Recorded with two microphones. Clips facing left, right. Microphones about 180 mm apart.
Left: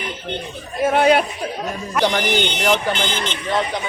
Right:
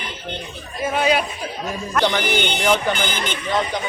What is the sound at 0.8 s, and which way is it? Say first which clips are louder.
Speech: left 5 dB; 65° left (ahead or behind).